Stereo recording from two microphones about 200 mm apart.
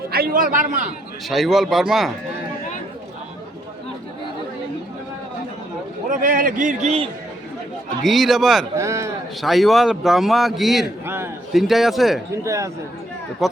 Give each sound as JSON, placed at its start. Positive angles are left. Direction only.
{"t": 0.1, "sound": "a man's voice", "side_deg": -45}
{"t": 1.3, "sound": "speech", "side_deg": 0}
{"t": 6.1, "sound": "a man's voice", "side_deg": -45}
{"t": 8.0, "sound": "speech", "side_deg": 0}
{"t": 8.7, "sound": "speech", "side_deg": -15}
{"t": 9.4, "sound": "speech", "side_deg": 0}
{"t": 11.0, "sound": "a sound", "side_deg": -10}
{"t": 11.5, "sound": "speech", "side_deg": 0}
{"t": 12.5, "sound": "speech", "side_deg": -15}
{"t": 13.4, "sound": "speech", "side_deg": 0}